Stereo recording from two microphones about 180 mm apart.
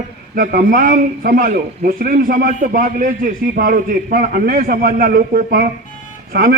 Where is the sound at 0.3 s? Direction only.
50° right (ahead or behind).